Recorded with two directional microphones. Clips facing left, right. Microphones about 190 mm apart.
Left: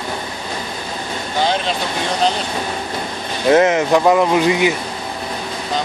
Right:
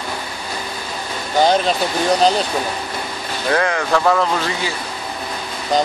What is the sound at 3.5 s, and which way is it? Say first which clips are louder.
Speech: left 6 dB; 20° left (ahead or behind).